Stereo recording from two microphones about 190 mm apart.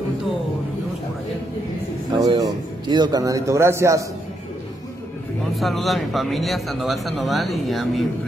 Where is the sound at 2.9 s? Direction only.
20° right (ahead or behind).